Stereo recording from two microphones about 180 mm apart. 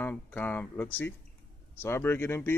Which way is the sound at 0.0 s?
10° left (ahead or behind).